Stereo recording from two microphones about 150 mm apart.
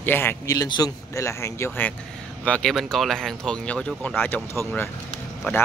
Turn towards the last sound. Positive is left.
turn(degrees=15)  # may be behind; listen again after turning